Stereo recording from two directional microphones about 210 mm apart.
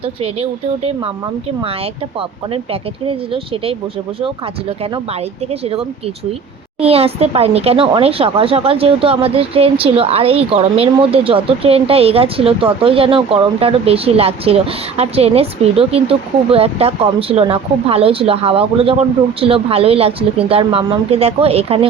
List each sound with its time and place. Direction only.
3.1 s speech: 25° right (ahead or behind)
5.5 s speech: 30° right (ahead or behind)